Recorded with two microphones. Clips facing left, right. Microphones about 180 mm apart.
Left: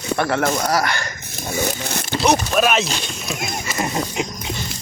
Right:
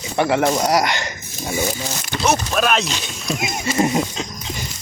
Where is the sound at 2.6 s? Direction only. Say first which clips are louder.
Left 1 dB; centre (ahead or behind).